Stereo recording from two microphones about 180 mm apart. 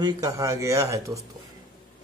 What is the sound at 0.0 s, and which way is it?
Speech, 20° right (ahead or behind).